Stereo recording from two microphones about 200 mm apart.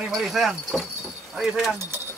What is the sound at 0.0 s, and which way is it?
Speech, centre (ahead or behind).